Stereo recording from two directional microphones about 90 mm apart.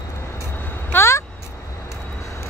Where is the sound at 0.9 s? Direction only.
30° left (ahead or behind).